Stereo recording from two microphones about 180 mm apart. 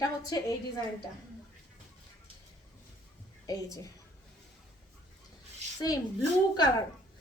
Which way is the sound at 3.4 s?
20° left (ahead or behind).